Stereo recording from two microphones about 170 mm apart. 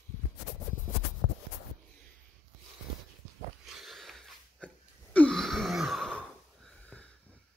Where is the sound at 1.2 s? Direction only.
60° left (ahead or behind).